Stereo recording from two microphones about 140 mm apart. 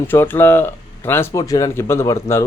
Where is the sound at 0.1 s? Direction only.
15° left (ahead or behind).